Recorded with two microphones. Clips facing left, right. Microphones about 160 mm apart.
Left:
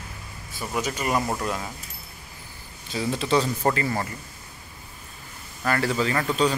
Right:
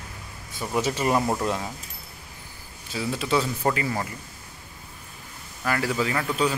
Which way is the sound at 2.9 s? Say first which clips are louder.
Left 2 dB; 5° right (ahead or behind).